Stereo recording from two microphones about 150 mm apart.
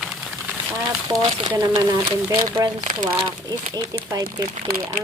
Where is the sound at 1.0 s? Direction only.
25° right (ahead or behind).